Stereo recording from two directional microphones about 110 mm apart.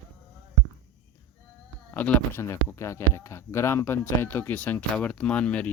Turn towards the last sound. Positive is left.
turn(degrees=10)  # may be behind; listen again after turning